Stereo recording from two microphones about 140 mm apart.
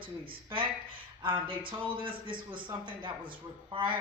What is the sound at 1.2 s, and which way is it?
A woman's voice, 35° right (ahead or behind).